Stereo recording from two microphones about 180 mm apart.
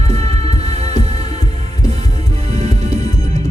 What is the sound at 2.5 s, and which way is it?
Music, 35° right (ahead or behind).